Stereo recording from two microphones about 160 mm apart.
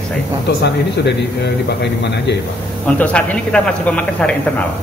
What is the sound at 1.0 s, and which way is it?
Speech, 90° left.